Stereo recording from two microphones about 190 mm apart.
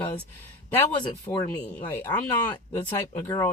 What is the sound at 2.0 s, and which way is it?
Speech, 10° left (ahead or behind).